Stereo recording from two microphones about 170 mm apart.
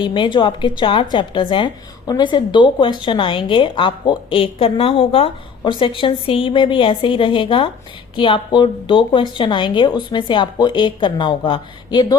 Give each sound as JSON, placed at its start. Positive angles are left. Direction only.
{"t": 0.0, "sound": "a woman's voice", "side_deg": 30}